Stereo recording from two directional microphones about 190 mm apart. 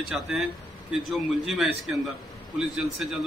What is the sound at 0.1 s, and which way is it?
A man's voice, 5° right (ahead or behind).